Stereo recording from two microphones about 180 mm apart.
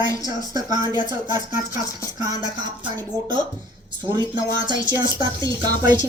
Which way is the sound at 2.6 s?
25° right (ahead or behind).